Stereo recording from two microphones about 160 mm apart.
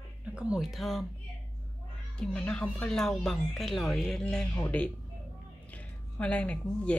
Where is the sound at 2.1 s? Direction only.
5° left (ahead or behind).